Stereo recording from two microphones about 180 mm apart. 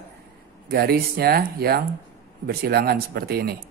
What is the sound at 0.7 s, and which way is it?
Speech, 60° right (ahead or behind).